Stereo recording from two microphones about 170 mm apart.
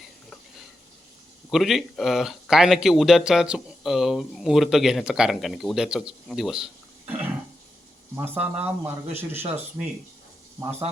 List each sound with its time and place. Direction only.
1.5 s a man's voice: centre (ahead or behind)
8.1 s speech: 10° right (ahead or behind)